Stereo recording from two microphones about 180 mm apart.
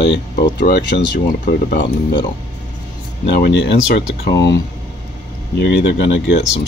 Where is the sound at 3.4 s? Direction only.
70° left (ahead or behind).